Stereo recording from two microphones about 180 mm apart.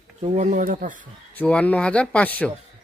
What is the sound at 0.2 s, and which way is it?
Speech, 35° right (ahead or behind).